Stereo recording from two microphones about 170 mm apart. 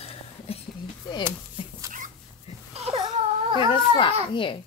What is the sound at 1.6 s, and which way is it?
Dog, 30° left (ahead or behind).